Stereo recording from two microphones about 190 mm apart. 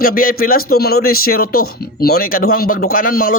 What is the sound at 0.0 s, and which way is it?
Speech, 50° left (ahead or behind).